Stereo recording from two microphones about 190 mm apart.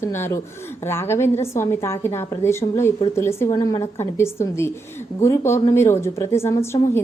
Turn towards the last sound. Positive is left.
turn(degrees=15)  # may be behind; listen again after turning